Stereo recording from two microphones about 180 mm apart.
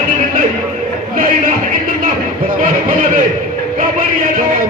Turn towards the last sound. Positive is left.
turn(degrees=-45)  # may be behind; listen again after turning